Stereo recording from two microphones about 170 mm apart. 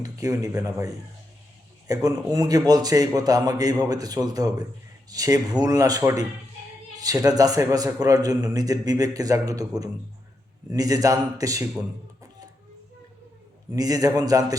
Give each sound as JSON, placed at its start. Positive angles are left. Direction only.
{"t": 0.0, "sound": "a man's voice", "side_deg": -20}
{"t": 13.7, "sound": "a man's voice", "side_deg": -20}